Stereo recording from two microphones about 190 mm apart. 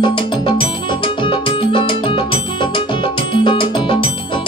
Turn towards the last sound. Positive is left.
turn(degrees=25)  # may be behind; listen again after turning